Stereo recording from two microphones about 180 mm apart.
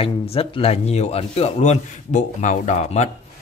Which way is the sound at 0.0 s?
30° left (ahead or behind).